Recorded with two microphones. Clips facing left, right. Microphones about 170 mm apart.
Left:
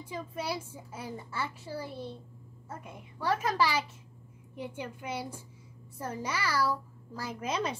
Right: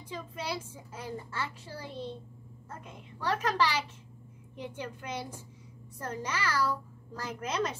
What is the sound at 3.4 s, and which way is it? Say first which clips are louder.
A child's voice: right 2 dB; 10° left (ahead or behind).